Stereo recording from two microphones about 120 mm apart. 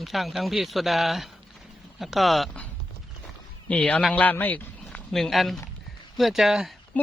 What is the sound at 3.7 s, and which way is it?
A man's voice, 10° left (ahead or behind).